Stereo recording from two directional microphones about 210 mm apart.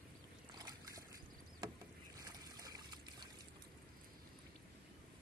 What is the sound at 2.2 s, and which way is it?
Boat, 20° right (ahead or behind).